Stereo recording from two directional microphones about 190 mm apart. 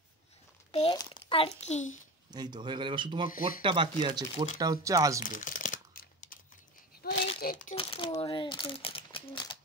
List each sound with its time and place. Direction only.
0.7 s a child's voice: 30° left (ahead or behind)
2.3 s speech: 20° right (ahead or behind)
5.2 s crumpling: 45° left (ahead or behind)
7.0 s a sound: 55° left (ahead or behind)
7.3 s crumpling: 45° left (ahead or behind)
7.7 s speech: 30° left (ahead or behind)